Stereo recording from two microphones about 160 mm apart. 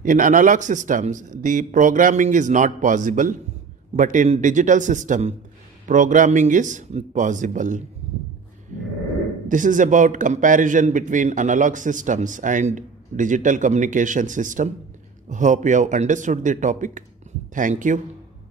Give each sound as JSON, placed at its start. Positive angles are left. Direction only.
{"t": 0.0, "sound": "a man's voice", "side_deg": -55}
{"t": 9.5, "sound": "a man's voice", "side_deg": -55}